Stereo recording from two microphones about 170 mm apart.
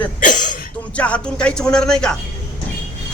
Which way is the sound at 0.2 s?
50° left (ahead or behind).